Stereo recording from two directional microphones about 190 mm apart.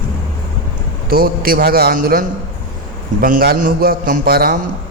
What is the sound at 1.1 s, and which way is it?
Speech, 50° right (ahead or behind).